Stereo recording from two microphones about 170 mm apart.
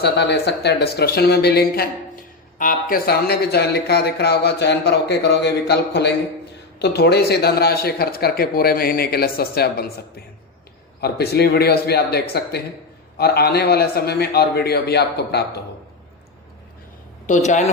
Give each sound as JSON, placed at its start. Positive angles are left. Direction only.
{"t": 0.0, "sound": "speech", "side_deg": 80}
{"t": 2.6, "sound": "speech", "side_deg": 55}
{"t": 11.0, "sound": "speech", "side_deg": 70}
{"t": 17.2, "sound": "speech", "side_deg": 45}